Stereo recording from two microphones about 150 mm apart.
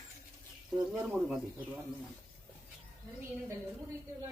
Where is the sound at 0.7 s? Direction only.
5° right (ahead or behind).